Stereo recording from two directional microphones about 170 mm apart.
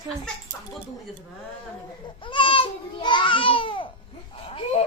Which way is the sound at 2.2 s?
30° left (ahead or behind).